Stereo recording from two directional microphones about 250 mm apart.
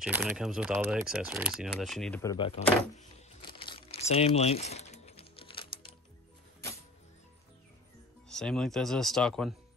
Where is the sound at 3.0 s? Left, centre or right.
Left.